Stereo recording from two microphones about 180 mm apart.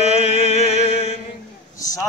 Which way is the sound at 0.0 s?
35° left (ahead or behind).